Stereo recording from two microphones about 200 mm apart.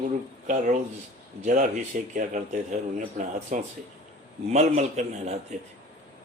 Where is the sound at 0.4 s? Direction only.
40° right (ahead or behind).